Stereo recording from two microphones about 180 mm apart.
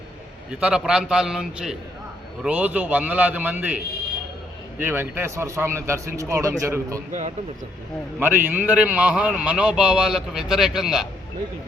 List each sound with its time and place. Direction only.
0.5 s a man's voice: 5° right (ahead or behind)
4.8 s speech: 10° right (ahead or behind)
7.1 s speech: 40° right (ahead or behind)
8.2 s a man's voice: 10° right (ahead or behind)